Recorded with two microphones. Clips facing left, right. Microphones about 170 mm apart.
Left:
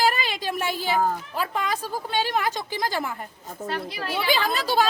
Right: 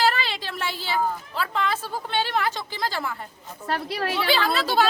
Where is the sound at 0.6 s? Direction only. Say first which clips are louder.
Left 2 dB; 45° left (ahead or behind).